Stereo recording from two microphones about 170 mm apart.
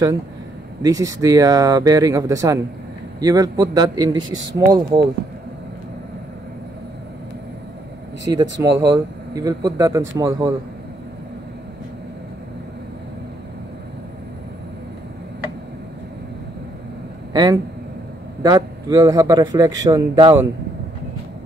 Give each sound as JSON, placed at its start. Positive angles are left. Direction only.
{"t": 0.8, "sound": "speech", "side_deg": -20}
{"t": 8.3, "sound": "speech", "side_deg": -20}
{"t": 17.3, "sound": "a sound", "side_deg": -25}
{"t": 18.4, "sound": "speech", "side_deg": -20}